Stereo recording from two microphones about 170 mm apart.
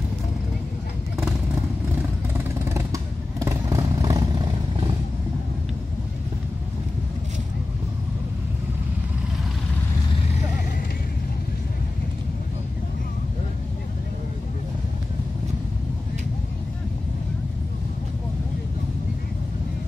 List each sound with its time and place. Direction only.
2.3 s vehicle: 15° right (ahead or behind)